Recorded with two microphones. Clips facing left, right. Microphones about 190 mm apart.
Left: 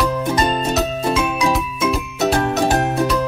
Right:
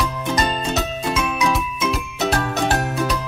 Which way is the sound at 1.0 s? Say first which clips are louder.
Left 1 dB; 30° left (ahead or behind).